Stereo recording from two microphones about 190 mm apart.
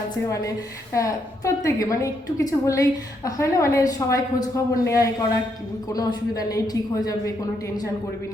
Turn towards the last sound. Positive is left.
turn(degrees=20)  # may be behind; listen again after turning